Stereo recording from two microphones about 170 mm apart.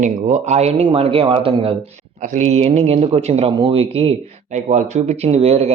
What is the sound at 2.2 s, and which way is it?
Speech, 45° right (ahead or behind).